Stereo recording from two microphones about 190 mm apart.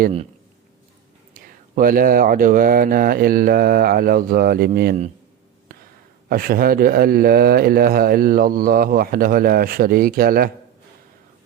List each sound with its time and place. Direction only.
1.4 s speech: 50° right (ahead or behind)
6.2 s speech: 50° right (ahead or behind)